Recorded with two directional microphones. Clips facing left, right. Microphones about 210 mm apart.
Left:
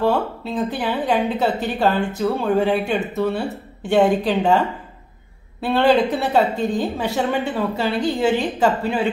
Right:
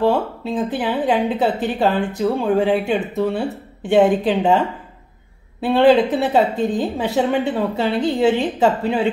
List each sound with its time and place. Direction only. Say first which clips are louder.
0.0 s a woman's voice: right 2 dB; 20° right (ahead or behind)